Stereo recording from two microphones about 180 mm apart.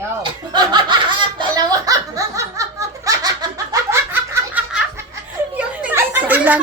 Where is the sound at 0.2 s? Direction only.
25° right (ahead or behind).